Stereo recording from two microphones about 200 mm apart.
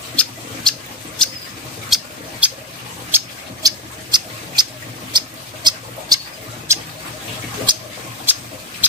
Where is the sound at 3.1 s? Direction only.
20° right (ahead or behind).